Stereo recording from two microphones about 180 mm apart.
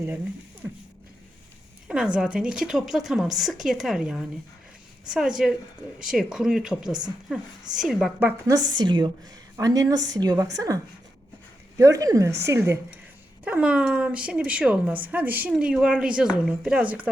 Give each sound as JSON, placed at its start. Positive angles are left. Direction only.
{"t": 1.9, "sound": "a woman's voice", "side_deg": -5}
{"t": 5.4, "sound": "a woman's voice", "side_deg": -5}
{"t": 11.8, "sound": "a woman's voice", "side_deg": -20}